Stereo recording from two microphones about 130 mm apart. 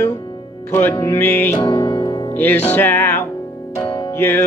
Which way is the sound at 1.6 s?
35° left (ahead or behind).